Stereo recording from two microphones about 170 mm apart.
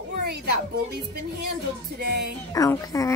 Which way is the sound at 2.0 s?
75° right (ahead or behind).